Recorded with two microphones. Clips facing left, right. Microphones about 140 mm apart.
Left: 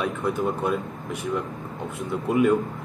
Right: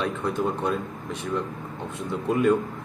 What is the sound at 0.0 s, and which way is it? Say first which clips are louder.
Speech: left 1 dB; 5° left (ahead or behind).